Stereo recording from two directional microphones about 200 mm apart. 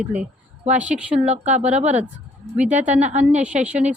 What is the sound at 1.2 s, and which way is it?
Speech, 35° right (ahead or behind).